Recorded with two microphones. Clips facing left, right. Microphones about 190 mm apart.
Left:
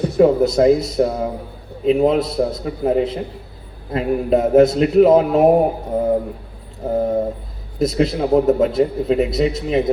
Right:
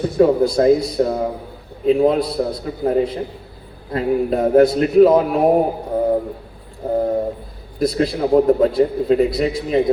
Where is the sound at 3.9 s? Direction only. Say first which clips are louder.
Left 1 dB; 20° left (ahead or behind).